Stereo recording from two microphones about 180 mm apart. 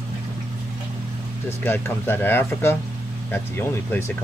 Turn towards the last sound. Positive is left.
turn(degrees=10)  # may be behind; listen again after turning